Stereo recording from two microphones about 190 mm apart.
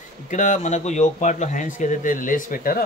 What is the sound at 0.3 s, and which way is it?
Speech, 40° left (ahead or behind).